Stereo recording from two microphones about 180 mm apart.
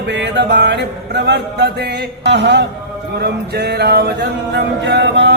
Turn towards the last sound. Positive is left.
turn(degrees=-75)  # may be behind; listen again after turning